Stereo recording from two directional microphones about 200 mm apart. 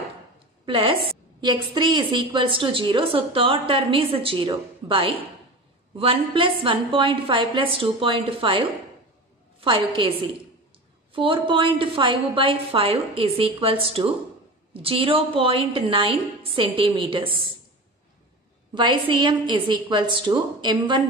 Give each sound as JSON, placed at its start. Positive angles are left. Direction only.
{"t": 0.7, "sound": "a woman's voice", "side_deg": -25}
{"t": 11.1, "sound": "a woman's voice", "side_deg": -25}
{"t": 18.8, "sound": "a woman's voice", "side_deg": -25}